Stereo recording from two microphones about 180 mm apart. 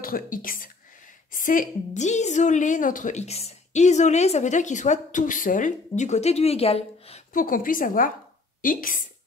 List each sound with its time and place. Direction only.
0.0 s a woman's voice: 50° left (ahead or behind); by 7.2 s 35° left (ahead or behind)
7.3 s a woman's voice: 50° left (ahead or behind)